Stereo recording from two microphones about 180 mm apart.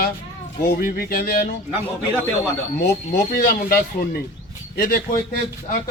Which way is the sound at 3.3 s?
55° left (ahead or behind).